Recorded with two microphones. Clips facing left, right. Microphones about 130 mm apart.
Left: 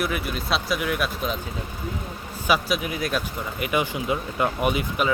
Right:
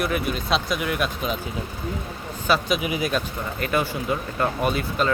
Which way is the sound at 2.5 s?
5° left (ahead or behind).